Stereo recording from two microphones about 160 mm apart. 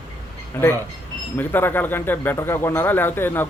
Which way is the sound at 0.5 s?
15° left (ahead or behind).